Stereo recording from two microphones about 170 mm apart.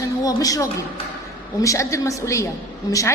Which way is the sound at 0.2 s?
20° left (ahead or behind).